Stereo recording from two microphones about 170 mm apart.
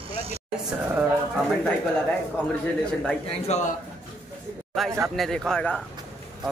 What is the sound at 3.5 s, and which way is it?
Speech, 45° left (ahead or behind).